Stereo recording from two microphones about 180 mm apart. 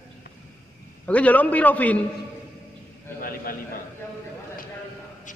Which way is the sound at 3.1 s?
55° left (ahead or behind).